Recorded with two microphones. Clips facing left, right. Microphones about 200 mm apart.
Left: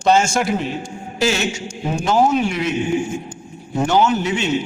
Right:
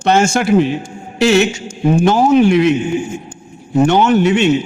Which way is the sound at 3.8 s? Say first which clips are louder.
Right 6 dB; 60° right (ahead or behind).